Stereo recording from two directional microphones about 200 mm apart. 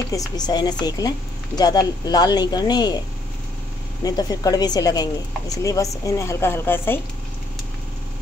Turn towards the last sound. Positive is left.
turn(degrees=10)  # may be behind; listen again after turning